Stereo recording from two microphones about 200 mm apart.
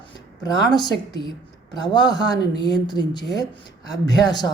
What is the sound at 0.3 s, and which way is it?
Speech, 20° left (ahead or behind).